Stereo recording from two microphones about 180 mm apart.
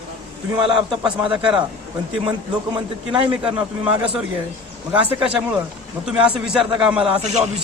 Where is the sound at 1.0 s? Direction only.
5° right (ahead or behind).